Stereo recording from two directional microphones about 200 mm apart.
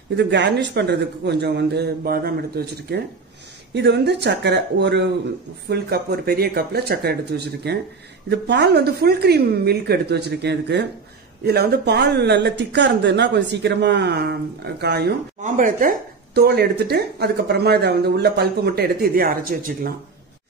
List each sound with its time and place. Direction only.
0.1 s speech: 60° right (ahead or behind)
15.4 s speech: 40° right (ahead or behind)